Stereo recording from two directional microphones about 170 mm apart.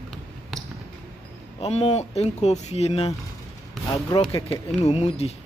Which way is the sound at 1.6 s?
35° left (ahead or behind).